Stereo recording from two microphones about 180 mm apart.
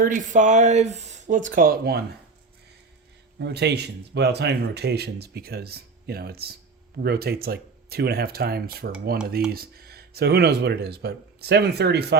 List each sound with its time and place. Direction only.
0.0 s speech: 45° right (ahead or behind)
3.3 s speech: 70° right (ahead or behind)